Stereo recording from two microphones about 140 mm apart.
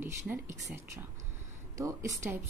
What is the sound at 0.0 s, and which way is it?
Speech, 15° right (ahead or behind).